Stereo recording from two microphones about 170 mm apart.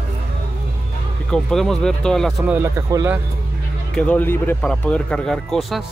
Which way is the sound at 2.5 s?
15° right (ahead or behind).